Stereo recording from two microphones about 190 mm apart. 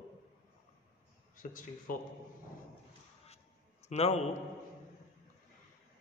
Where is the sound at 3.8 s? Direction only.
35° left (ahead or behind).